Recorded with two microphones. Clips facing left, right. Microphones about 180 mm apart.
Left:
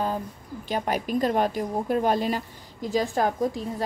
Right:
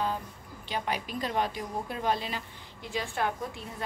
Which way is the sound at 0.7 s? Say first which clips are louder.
Left 6 dB; 45° left (ahead or behind).